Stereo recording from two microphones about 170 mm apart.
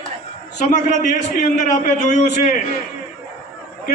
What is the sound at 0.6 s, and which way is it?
A man's voice, 45° left (ahead or behind).